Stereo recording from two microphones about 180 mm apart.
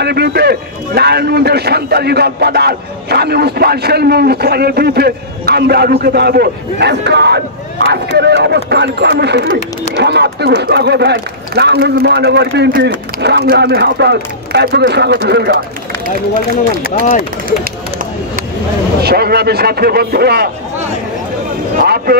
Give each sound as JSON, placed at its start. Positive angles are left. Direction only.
{"t": 0.0, "sound": "a man's voice", "side_deg": -65}
{"t": 17.0, "sound": "speech", "side_deg": 45}
{"t": 18.9, "sound": "a man's voice", "side_deg": -60}
{"t": 21.8, "sound": "a man's voice", "side_deg": -60}